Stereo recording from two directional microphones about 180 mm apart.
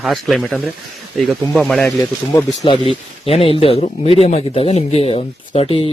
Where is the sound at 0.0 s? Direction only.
Centre (ahead or behind).